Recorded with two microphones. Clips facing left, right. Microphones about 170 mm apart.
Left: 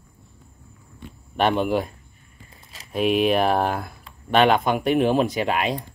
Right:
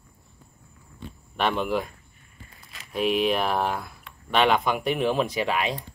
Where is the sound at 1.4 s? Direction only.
40° left (ahead or behind).